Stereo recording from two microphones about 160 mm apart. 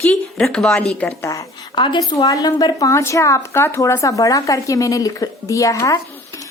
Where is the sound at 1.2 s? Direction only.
20° left (ahead or behind).